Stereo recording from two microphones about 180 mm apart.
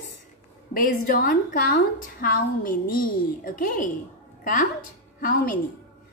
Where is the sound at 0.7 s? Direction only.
50° left (ahead or behind).